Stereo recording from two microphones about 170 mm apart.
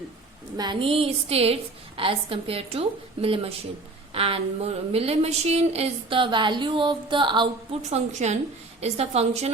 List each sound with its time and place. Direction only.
0.5 s speech: 25° right (ahead or behind)